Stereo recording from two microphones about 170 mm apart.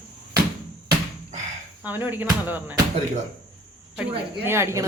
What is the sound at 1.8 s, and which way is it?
Speech, 10° right (ahead or behind).